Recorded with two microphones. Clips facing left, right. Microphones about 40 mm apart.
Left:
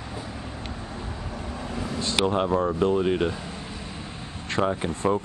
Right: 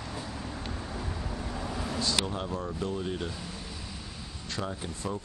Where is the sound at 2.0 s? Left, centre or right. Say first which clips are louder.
Left 7 dB; left.